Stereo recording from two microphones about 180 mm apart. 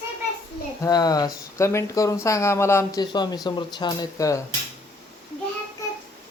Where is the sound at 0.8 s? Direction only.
20° left (ahead or behind).